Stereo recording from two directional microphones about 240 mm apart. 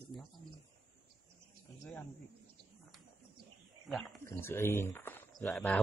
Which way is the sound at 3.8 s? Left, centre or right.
Centre.